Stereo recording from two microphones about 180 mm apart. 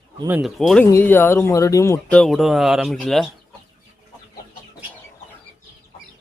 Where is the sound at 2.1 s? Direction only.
Centre (ahead or behind).